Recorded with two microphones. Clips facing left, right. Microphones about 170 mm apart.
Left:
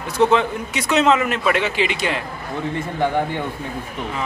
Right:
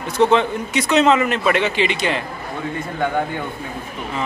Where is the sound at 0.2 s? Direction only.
5° left (ahead or behind).